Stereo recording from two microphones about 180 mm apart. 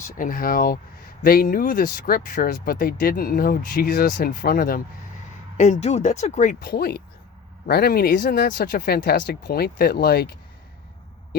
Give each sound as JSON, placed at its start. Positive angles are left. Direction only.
{"t": 0.0, "sound": "speech", "side_deg": 50}
{"t": 5.5, "sound": "speech", "side_deg": 40}